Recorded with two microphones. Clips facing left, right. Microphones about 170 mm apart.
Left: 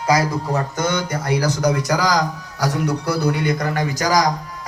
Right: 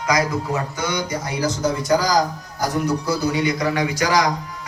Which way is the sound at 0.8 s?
50° left (ahead or behind).